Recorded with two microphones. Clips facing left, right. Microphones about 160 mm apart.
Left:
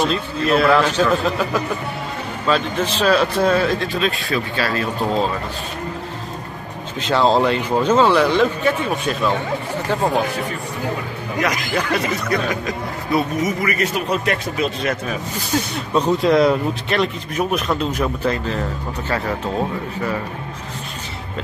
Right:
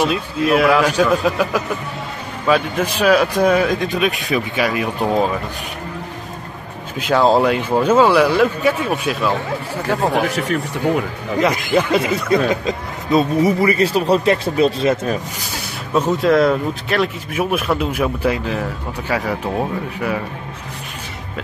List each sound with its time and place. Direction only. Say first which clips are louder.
0.0 s speech: right 2 dB; 10° right (ahead or behind)
7.0 s speech: right 2 dB; 10° right (ahead or behind)
10.3 s speech: right 5 dB; 80° right
11.3 s speech: right 5 dB; 25° right (ahead or behind)
15.9 s speech: right 1 dB; 5° right (ahead or behind)